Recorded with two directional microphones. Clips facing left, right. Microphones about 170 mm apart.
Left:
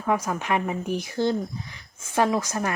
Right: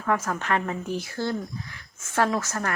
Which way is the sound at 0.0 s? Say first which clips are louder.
Left 1 dB; 15° left (ahead or behind).